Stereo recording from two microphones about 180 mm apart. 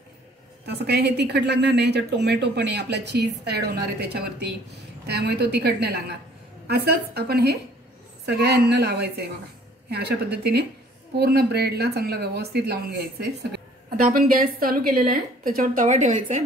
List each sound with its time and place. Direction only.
0.7 s a woman's voice: 65° right (ahead or behind); by 16.4 s 45° right (ahead or behind)